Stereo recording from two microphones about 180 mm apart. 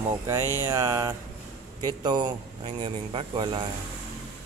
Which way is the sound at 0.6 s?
15° right (ahead or behind).